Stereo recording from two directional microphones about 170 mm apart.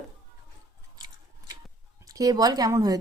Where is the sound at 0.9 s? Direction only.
25° right (ahead or behind).